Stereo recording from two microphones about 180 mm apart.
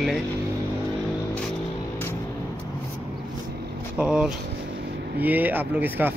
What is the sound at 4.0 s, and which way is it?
Speech, 5° right (ahead or behind).